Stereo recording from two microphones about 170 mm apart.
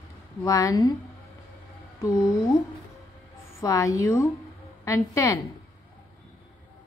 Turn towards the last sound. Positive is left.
turn(degrees=20)  # may be behind; listen again after turning